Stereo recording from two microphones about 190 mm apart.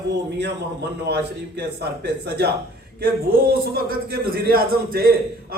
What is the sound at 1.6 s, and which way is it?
Speech, 60° right (ahead or behind).